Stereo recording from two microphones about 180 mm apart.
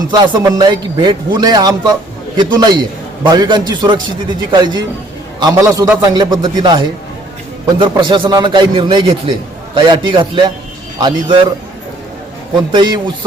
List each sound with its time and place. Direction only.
0.1 s a man's voice: 25° right (ahead or behind)
12.7 s a man's voice: 25° right (ahead or behind)